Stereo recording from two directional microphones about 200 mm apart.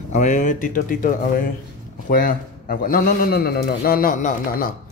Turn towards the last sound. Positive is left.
turn(degrees=45)  # may be behind; listen again after turning